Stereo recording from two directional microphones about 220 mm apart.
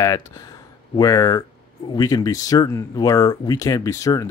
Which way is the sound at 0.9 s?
15° left (ahead or behind).